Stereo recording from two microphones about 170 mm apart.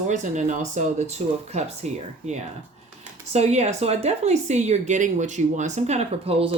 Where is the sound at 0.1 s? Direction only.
45° right (ahead or behind).